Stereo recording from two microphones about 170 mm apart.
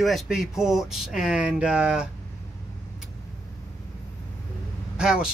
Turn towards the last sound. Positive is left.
turn(degrees=-5)  # may be behind; listen again after turning